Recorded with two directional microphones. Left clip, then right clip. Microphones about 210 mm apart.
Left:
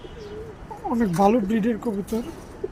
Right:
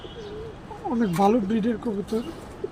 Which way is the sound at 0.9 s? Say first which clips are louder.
Left 2 dB; 25° left (ahead or behind).